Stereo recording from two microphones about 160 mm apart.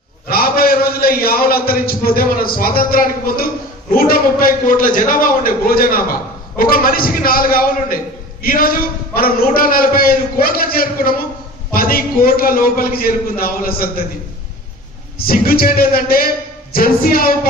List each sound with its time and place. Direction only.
0.3 s a man's voice: 70° left (ahead or behind)
15.2 s a man's voice: 70° left (ahead or behind)